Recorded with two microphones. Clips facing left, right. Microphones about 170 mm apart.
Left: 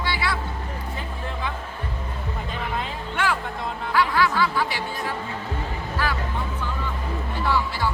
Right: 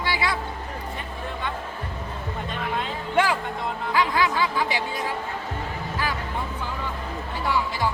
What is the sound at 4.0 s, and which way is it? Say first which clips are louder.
Speech: left 2 dB; 15° right (ahead or behind).